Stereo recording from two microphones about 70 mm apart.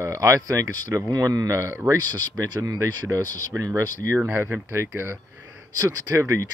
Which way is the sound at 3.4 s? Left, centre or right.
Right.